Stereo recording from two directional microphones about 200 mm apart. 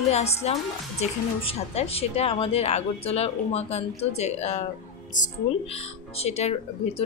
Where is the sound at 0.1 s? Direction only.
30° left (ahead or behind).